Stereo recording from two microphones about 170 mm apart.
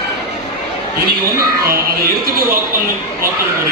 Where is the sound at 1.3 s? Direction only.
60° right (ahead or behind).